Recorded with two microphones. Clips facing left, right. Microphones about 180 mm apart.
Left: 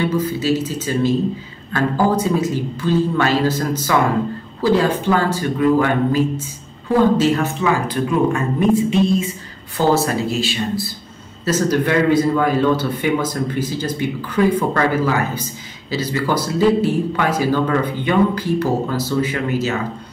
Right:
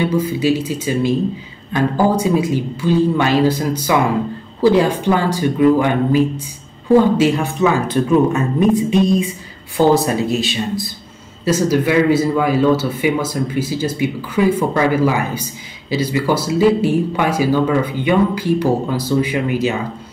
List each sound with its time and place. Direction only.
0.0 s a man's voice: 10° right (ahead or behind)